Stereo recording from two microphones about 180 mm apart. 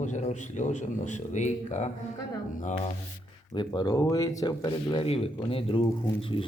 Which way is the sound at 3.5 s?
25° left (ahead or behind).